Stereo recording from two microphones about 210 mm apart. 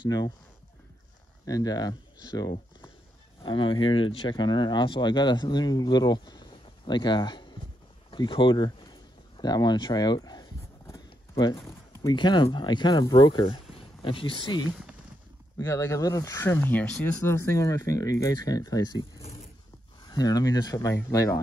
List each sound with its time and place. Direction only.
0.0 s speech: 20° left (ahead or behind)
1.4 s speech: 15° left (ahead or behind)